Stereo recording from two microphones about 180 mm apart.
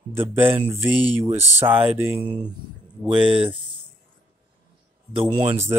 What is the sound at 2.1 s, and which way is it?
Speech, 30° right (ahead or behind).